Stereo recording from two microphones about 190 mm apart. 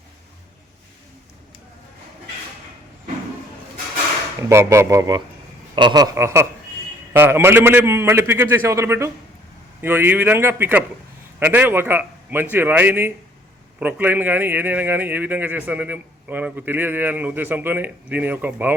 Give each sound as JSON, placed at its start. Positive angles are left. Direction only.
{"t": 4.4, "sound": "a man's voice", "side_deg": -15}